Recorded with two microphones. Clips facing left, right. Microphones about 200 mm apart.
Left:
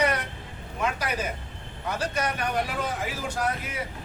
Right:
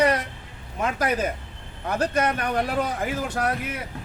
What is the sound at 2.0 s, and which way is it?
Speech, 55° right (ahead or behind).